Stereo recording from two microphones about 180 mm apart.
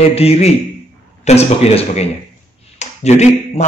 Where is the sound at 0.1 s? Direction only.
35° left (ahead or behind).